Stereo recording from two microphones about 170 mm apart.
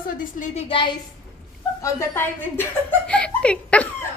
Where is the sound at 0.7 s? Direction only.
30° left (ahead or behind).